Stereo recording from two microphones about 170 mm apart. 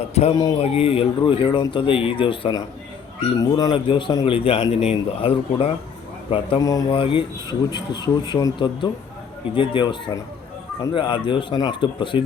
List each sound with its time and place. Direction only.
0.1 s a man's voice: 40° left (ahead or behind)
6.6 s a man's voice: 20° left (ahead or behind)